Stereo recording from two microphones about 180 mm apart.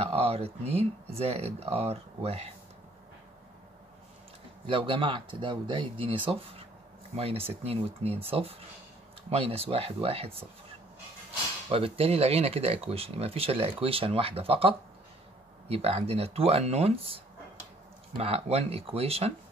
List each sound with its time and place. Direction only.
0.0 s speech: 35° right (ahead or behind)
4.6 s speech: 30° right (ahead or behind)
11.7 s speech: 35° right (ahead or behind)